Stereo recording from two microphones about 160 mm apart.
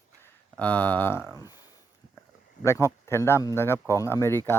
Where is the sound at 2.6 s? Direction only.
15° left (ahead or behind).